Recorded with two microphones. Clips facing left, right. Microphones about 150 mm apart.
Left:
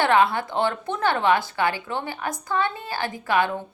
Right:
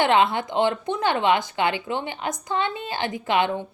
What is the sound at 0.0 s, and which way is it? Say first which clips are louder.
A woman's voice: even; 20° right (ahead or behind).